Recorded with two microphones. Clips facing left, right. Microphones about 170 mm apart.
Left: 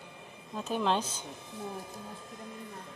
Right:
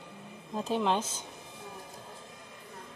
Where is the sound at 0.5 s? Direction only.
30° right (ahead or behind).